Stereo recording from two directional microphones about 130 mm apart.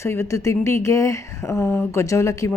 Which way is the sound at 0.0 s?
20° left (ahead or behind).